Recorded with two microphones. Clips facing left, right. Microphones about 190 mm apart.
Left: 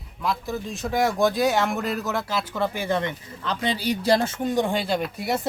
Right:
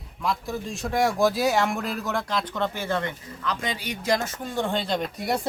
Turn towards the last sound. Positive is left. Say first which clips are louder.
# left 1 dB
turn(degrees=0)  # may be behind; listen again after turning